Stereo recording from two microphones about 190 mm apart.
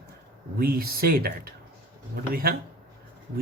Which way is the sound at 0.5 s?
50° right (ahead or behind).